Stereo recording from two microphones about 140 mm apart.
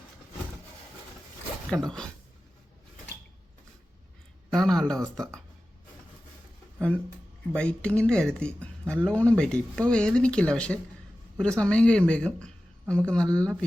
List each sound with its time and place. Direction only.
1.7 s speech: 15° right (ahead or behind)
4.5 s speech: 5° left (ahead or behind)
7.5 s speech: 5° left (ahead or behind)